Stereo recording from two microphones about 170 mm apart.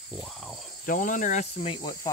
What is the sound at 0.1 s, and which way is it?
Cricket, centre (ahead or behind).